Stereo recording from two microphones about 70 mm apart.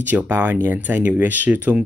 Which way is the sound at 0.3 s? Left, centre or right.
Right.